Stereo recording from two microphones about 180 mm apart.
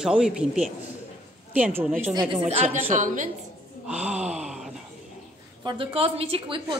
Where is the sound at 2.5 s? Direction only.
40° right (ahead or behind).